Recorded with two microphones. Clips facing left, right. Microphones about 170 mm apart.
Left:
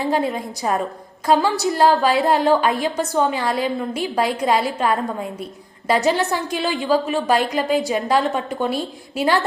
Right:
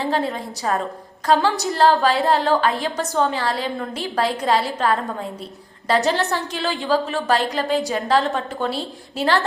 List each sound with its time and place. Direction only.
0.0 s a woman's voice: 15° left (ahead or behind)